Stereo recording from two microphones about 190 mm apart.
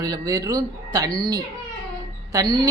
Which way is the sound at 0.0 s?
20° right (ahead or behind).